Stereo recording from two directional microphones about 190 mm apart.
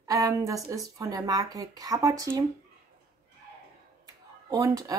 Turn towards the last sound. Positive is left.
turn(degrees=-20)  # may be behind; listen again after turning